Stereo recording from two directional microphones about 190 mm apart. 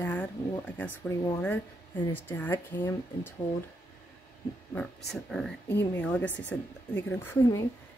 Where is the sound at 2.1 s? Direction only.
10° left (ahead or behind).